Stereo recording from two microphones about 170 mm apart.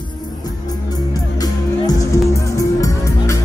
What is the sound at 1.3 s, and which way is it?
Music, 20° left (ahead or behind).